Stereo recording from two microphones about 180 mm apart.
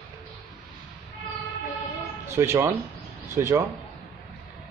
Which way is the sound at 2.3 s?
15° right (ahead or behind).